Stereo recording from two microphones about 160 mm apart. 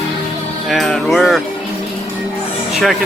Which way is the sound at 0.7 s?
Centre (ahead or behind).